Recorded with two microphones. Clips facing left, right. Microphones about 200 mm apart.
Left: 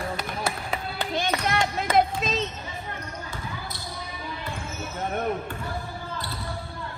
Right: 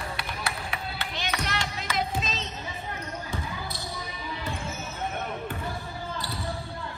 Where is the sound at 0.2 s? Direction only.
50° left (ahead or behind).